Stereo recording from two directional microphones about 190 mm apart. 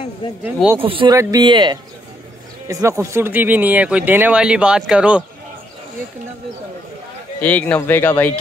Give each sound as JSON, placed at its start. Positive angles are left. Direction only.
{"t": 0.4, "sound": "speech", "side_deg": -10}
{"t": 0.7, "sound": "speech", "side_deg": -30}
{"t": 7.4, "sound": "speech", "side_deg": 10}